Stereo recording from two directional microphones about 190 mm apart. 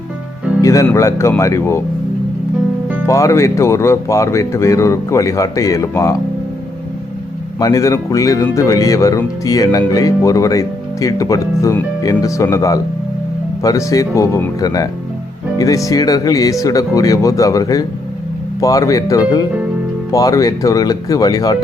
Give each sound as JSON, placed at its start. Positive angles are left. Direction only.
{"t": 0.6, "sound": "speech", "side_deg": 15}
{"t": 3.1, "sound": "speech", "side_deg": 15}
{"t": 7.6, "sound": "speech", "side_deg": 15}